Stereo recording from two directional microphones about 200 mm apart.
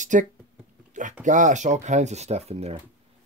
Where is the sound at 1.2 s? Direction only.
40° right (ahead or behind).